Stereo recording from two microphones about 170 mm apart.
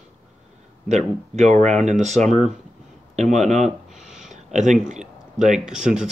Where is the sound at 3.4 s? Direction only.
40° right (ahead or behind).